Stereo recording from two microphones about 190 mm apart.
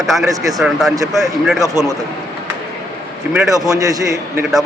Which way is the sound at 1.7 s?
15° right (ahead or behind).